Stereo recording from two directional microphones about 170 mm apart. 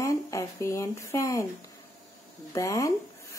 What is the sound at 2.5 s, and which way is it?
Speech, 20° left (ahead or behind).